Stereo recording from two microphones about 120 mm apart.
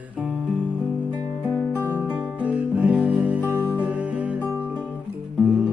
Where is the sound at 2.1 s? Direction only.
10° right (ahead or behind).